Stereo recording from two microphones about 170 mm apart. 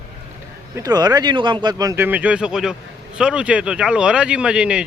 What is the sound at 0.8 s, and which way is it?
Speech, 20° right (ahead or behind).